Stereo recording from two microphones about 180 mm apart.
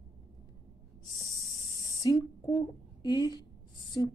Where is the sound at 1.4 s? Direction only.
20° left (ahead or behind).